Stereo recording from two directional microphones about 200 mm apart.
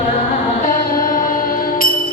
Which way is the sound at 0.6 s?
45° left (ahead or behind).